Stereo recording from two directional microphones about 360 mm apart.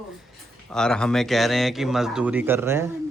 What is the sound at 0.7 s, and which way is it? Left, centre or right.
Speech, centre.